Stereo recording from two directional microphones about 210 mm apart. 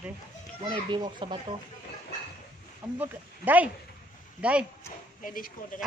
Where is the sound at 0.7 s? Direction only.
20° right (ahead or behind).